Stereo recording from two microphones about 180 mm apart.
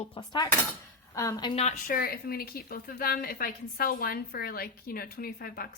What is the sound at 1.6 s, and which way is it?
A woman's voice, 45° left (ahead or behind).